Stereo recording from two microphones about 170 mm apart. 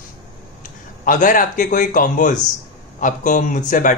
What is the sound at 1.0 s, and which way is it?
A man's voice, 50° left (ahead or behind).